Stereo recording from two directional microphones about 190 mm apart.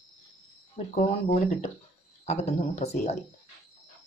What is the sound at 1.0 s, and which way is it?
Speech, 40° left (ahead or behind).